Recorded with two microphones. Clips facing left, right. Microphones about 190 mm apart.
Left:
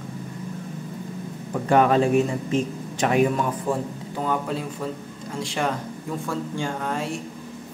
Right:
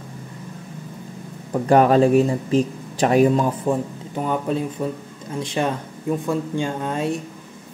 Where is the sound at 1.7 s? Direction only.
35° right (ahead or behind).